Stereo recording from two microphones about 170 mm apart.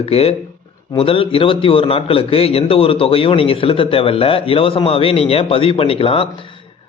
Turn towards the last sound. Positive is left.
turn(degrees=30)  # may be behind; listen again after turning